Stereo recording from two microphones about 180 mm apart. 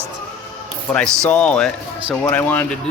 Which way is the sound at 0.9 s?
5° left (ahead or behind).